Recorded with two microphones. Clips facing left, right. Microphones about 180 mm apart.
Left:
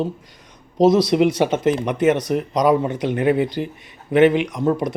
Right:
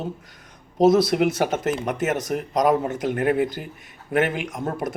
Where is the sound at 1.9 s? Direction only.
45° right (ahead or behind).